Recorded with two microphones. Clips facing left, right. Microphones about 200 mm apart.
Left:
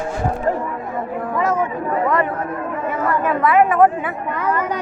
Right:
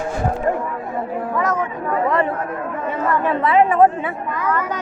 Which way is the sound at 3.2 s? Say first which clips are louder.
Left 1 dB; 30° right (ahead or behind).